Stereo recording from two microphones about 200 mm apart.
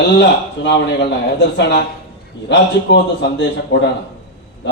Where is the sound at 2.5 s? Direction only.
60° left (ahead or behind).